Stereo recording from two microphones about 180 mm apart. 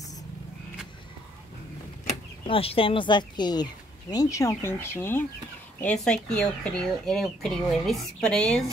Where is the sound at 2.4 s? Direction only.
30° left (ahead or behind); by 8.7 s 5° left (ahead or behind).